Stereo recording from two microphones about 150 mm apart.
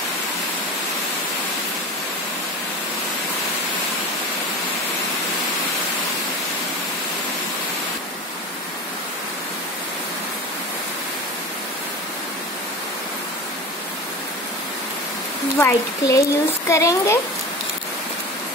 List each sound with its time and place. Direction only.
15.6 s speech: 20° left (ahead or behind)